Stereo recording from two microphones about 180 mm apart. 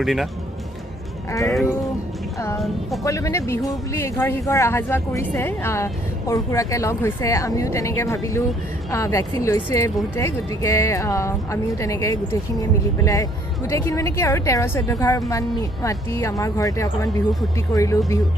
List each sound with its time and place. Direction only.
0.0 s speech: centre (ahead or behind)
3.0 s a woman's voice: 15° left (ahead or behind)